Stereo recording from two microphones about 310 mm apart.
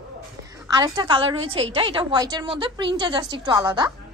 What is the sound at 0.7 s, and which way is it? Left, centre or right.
A woman's voice, centre.